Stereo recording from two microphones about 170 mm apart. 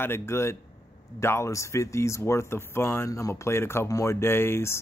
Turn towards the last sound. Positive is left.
turn(degrees=15)  # may be behind; listen again after turning